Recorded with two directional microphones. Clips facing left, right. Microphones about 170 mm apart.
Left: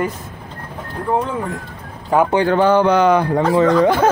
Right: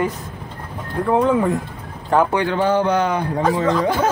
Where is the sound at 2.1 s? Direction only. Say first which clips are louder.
Left 1 dB; 10° left (ahead or behind).